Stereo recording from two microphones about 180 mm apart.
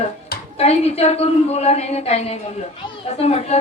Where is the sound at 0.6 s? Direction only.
35° left (ahead or behind).